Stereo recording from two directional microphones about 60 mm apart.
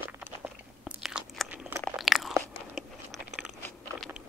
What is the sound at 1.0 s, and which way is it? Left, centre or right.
Crunch, centre.